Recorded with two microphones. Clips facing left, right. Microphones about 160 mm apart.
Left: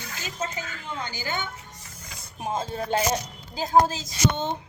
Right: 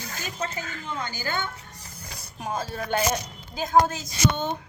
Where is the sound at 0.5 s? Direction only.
45° right (ahead or behind).